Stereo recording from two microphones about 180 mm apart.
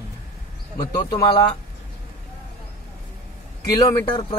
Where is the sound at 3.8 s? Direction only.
20° left (ahead or behind).